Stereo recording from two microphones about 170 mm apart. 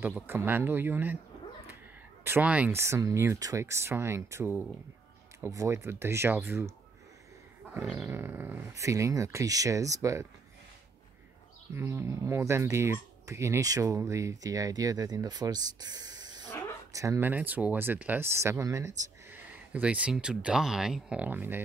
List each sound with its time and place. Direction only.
0.0 s speech: 10° right (ahead or behind)
2.2 s speech: 10° right (ahead or behind)
8.0 s speech: 15° right (ahead or behind)
11.7 s speech: 15° right (ahead or behind)